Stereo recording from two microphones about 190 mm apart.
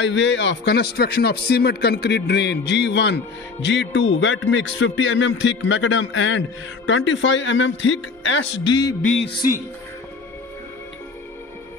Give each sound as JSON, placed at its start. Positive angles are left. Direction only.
{"t": 0.0, "sound": "a man's voice", "side_deg": 75}
{"t": 9.2, "sound": "speech", "side_deg": 50}